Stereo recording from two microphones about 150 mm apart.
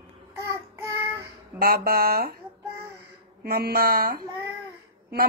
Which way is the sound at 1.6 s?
90° right.